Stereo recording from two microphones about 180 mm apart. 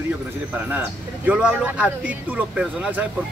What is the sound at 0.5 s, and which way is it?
Speech, 10° right (ahead or behind).